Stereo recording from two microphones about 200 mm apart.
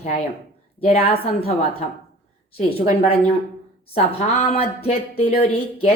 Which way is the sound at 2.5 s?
30° left (ahead or behind).